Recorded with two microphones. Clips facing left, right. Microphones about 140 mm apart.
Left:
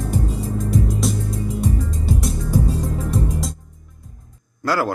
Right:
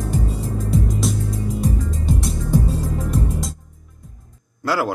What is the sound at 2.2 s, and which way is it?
Music, centre (ahead or behind).